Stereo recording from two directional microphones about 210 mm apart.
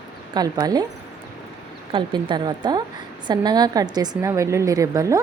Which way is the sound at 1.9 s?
20° right (ahead or behind).